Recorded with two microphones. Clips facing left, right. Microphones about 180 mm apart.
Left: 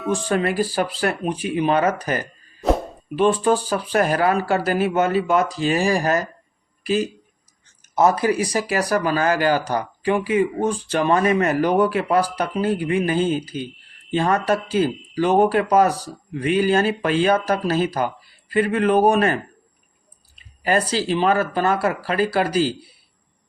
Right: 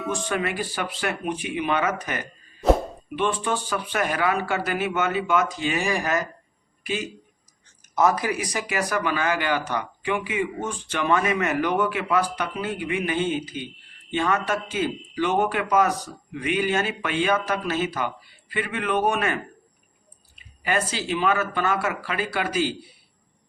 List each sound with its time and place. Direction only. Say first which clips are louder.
0.0 s speech: left 5 dB; centre (ahead or behind)
0.3 s speech: left 6 dB; 35° left (ahead or behind)
20.7 s speech: left 5 dB; 35° left (ahead or behind)